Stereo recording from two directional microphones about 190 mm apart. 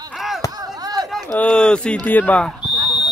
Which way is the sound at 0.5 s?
20° right (ahead or behind).